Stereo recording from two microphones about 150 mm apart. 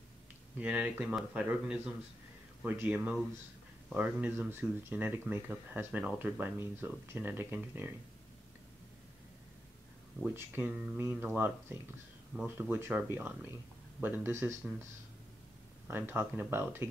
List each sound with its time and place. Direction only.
0.6 s speech: 10° right (ahead or behind)
10.2 s speech: 10° right (ahead or behind)
15.9 s speech: 15° right (ahead or behind)